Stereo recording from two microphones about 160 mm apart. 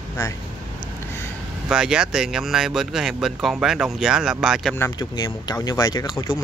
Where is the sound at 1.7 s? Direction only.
5° right (ahead or behind).